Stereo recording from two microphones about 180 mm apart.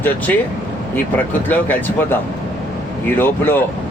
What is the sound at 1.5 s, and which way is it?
Speech, 10° left (ahead or behind).